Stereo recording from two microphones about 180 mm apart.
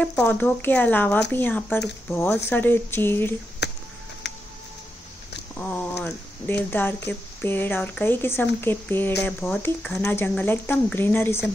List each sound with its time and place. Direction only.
0.0 s speech: 10° left (ahead or behind)
3.6 s a sound: 70° left (ahead or behind)
5.6 s speech: 10° left (ahead or behind)